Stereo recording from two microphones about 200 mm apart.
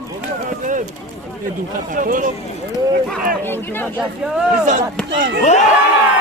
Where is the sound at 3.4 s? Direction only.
10° left (ahead or behind).